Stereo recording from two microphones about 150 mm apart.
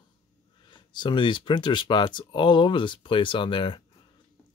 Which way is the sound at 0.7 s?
30° left (ahead or behind).